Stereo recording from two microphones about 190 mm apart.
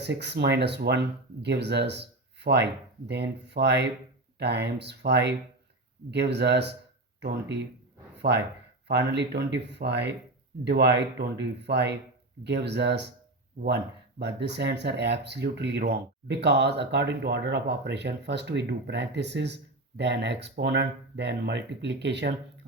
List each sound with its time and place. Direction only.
0.0 s speech: 65° right (ahead or behind)
8.9 s speech: 60° right (ahead or behind)
14.2 s speech: 65° right (ahead or behind)